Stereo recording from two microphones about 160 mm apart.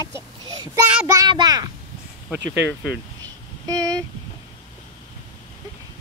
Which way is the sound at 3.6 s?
25° right (ahead or behind).